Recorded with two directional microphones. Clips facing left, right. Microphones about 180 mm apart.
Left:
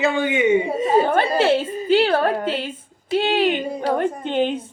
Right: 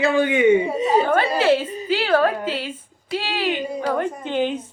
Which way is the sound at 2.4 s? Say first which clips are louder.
Left 2 dB; 50° left (ahead or behind).